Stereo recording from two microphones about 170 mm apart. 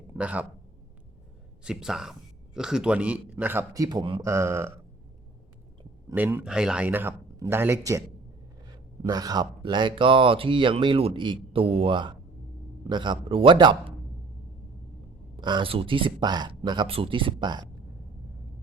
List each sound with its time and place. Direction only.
0.1 s speech: 10° right (ahead or behind)
1.6 s speech: 5° right (ahead or behind)
3.8 s speech: 25° right (ahead or behind)
4.2 s speech: 15° right (ahead or behind)
6.1 s speech: 15° right (ahead or behind)
9.0 s speech: 20° right (ahead or behind)
15.4 s speech: 25° right (ahead or behind)